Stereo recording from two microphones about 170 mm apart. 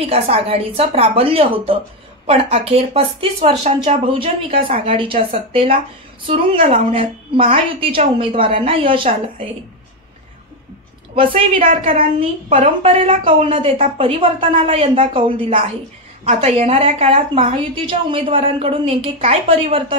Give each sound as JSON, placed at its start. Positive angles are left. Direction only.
{"t": 0.0, "sound": "a woman's voice", "side_deg": -35}
{"t": 11.1, "sound": "a woman's voice", "side_deg": -30}